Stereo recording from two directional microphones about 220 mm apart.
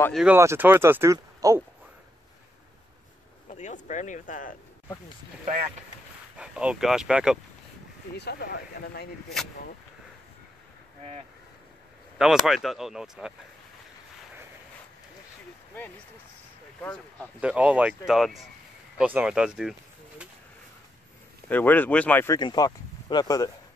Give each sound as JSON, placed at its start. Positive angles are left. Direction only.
{"t": 0.0, "sound": "speech", "side_deg": 0}
{"t": 3.4, "sound": "speech", "side_deg": 35}
{"t": 6.3, "sound": "speech", "side_deg": -5}
{"t": 8.2, "sound": "speech", "side_deg": 45}
{"t": 12.2, "sound": "speech", "side_deg": 0}
{"t": 16.8, "sound": "speech", "side_deg": 5}
{"t": 17.4, "sound": "speech", "side_deg": -5}
{"t": 21.5, "sound": "speech", "side_deg": 10}